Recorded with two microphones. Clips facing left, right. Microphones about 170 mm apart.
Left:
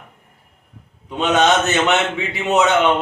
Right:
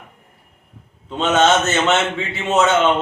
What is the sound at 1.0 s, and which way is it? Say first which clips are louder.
A man's voice: even; 15° left (ahead or behind).